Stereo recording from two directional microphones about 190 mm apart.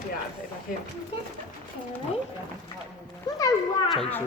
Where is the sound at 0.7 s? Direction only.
45° left (ahead or behind).